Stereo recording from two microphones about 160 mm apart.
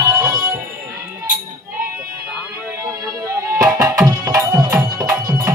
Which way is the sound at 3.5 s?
20° right (ahead or behind).